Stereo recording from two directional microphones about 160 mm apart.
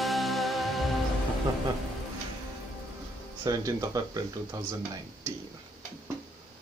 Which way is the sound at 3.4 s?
20° right (ahead or behind).